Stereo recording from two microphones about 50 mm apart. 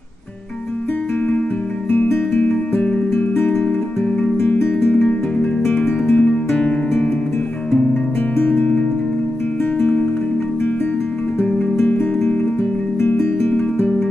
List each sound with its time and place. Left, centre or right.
2.3 s music: left
4.9 s music: centre
7.7 s music: centre
13.6 s music: centre